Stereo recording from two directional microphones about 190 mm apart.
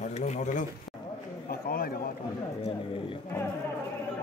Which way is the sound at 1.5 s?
50° left (ahead or behind).